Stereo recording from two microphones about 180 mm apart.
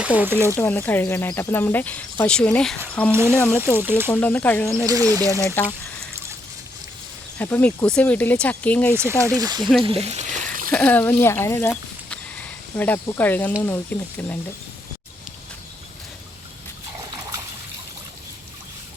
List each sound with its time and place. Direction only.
0.2 s speech: 15° right (ahead or behind)
0.5 s speech: 10° left (ahead or behind)
3.1 s speech: 15° right (ahead or behind)
4.1 s speech: 10° left (ahead or behind)
4.9 s speech: 20° right (ahead or behind)
7.3 s speech: 10° left (ahead or behind)
9.0 s speech: 15° right (ahead or behind)
9.6 s speech: centre (ahead or behind)
10.0 s frying: 35° right (ahead or behind)
10.7 s speech: 10° left (ahead or behind)
12.7 s speech: 10° left (ahead or behind)